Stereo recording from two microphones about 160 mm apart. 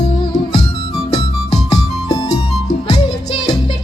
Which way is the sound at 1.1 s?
25° left (ahead or behind).